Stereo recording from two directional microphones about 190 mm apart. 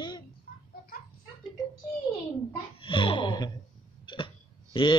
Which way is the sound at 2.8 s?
25° left (ahead or behind).